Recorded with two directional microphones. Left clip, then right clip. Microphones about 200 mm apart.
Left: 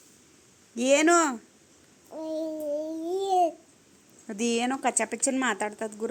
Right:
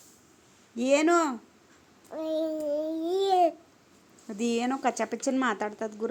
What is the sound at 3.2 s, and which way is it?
Babbling, 30° right (ahead or behind).